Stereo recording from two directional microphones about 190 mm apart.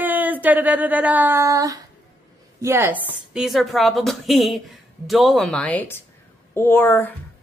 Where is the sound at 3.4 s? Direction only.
Centre (ahead or behind).